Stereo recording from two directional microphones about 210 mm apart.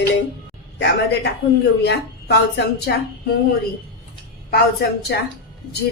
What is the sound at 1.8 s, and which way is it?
A woman's voice, 55° left (ahead or behind).